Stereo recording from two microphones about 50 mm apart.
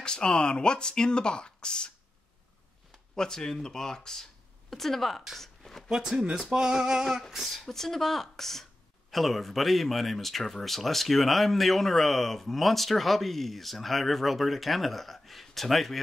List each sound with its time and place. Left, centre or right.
0.0 s speech: centre
3.2 s speech: centre
5.9 s female singing: centre
7.6 s speech: centre